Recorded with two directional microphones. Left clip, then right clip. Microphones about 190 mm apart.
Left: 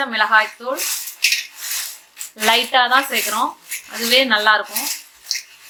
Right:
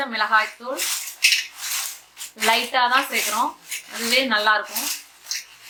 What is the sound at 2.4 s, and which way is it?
Speech, 20° left (ahead or behind).